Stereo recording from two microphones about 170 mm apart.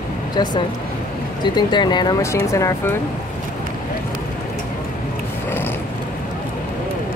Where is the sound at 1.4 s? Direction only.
25° left (ahead or behind).